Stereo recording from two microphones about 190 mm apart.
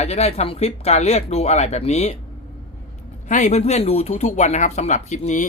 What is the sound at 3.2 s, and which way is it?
Speech, 40° left (ahead or behind).